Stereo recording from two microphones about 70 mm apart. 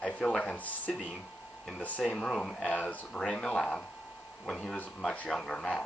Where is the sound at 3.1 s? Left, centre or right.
Centre.